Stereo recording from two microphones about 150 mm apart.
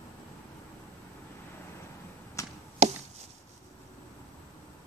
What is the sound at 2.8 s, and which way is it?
Chop, 45° right (ahead or behind).